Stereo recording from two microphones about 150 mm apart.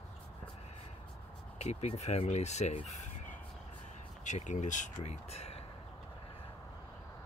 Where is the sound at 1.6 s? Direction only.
45° left (ahead or behind).